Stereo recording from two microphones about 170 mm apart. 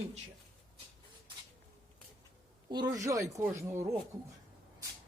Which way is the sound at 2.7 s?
25° right (ahead or behind).